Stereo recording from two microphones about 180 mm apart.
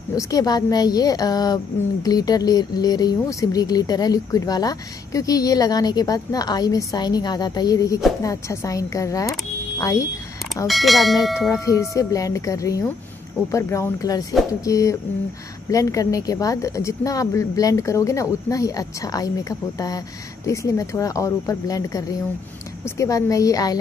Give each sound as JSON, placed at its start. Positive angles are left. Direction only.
{"t": 0.1, "sound": "speech", "side_deg": 20}
{"t": 10.7, "sound": "speech", "side_deg": 0}
{"t": 11.5, "sound": "speech", "side_deg": 20}
{"t": 20.4, "sound": "speech", "side_deg": 15}